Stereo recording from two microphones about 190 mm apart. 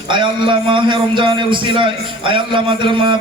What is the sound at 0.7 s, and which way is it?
A man's voice, 25° right (ahead or behind).